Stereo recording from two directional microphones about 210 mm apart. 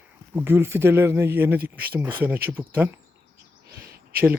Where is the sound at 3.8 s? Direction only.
50° right (ahead or behind).